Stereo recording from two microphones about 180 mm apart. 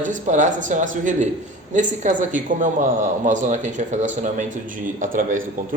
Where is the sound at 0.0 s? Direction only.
45° right (ahead or behind).